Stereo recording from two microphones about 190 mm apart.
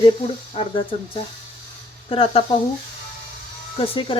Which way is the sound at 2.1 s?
30° left (ahead or behind).